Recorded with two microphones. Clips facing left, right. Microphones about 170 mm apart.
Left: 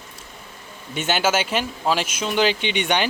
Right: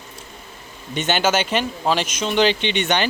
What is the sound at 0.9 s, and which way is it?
Speech, 5° left (ahead or behind).